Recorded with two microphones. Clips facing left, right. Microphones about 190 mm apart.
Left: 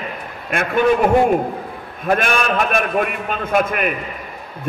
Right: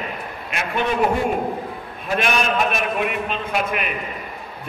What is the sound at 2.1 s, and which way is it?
A man's voice, 50° left (ahead or behind).